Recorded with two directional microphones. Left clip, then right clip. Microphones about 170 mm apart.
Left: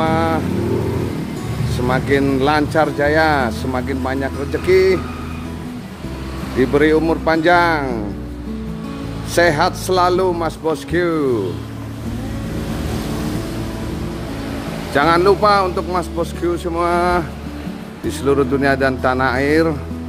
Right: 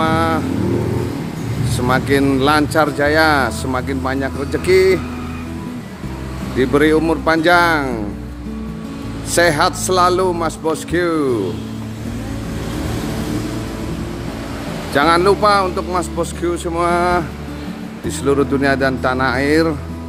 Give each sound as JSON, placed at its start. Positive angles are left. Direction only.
{"t": 0.0, "sound": "vehicle", "side_deg": 0}
{"t": 1.9, "sound": "speech", "side_deg": -5}
{"t": 6.6, "sound": "speech", "side_deg": 0}
{"t": 9.3, "sound": "speech", "side_deg": 0}
{"t": 15.0, "sound": "speech", "side_deg": 0}